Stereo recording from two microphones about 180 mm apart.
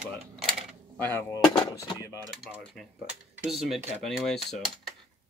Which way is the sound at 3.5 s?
Centre (ahead or behind).